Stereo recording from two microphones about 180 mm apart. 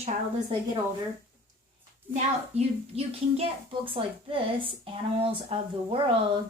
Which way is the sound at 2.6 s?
35° right (ahead or behind).